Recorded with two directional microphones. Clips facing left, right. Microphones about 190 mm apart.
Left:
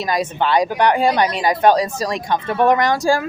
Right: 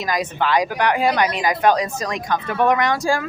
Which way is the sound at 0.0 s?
30° left (ahead or behind).